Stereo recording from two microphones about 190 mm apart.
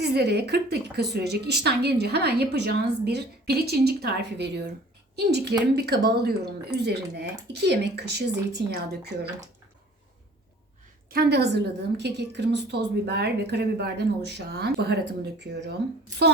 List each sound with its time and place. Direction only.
0.0 s a woman's voice: 60° right (ahead or behind)
11.1 s a woman's voice: 55° right (ahead or behind)